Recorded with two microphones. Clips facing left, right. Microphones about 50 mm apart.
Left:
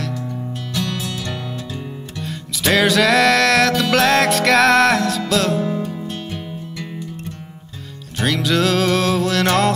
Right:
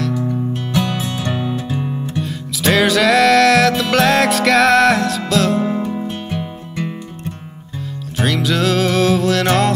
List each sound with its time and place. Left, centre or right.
0.8 s music: right
2.2 s music: centre
5.6 s music: right
8.2 s music: centre